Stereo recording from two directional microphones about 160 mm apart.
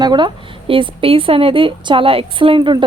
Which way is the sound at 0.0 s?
25° right (ahead or behind).